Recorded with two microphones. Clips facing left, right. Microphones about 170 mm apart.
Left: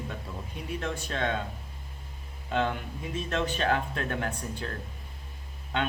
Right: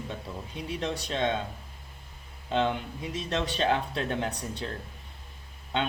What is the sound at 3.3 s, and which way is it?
Speech, 20° right (ahead or behind).